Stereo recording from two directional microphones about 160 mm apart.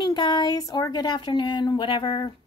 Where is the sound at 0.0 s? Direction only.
25° left (ahead or behind).